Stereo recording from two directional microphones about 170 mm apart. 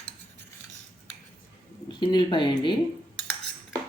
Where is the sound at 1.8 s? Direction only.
25° left (ahead or behind).